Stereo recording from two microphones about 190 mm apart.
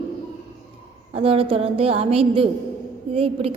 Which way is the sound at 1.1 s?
30° right (ahead or behind).